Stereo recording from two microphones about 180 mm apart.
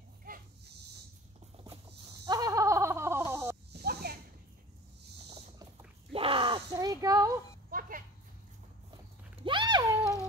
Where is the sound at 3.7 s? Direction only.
60° right (ahead or behind).